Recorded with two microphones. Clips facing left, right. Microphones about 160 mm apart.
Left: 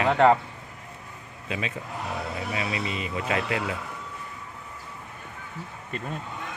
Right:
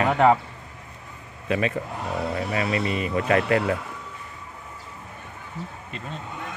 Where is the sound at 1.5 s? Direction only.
55° right (ahead or behind).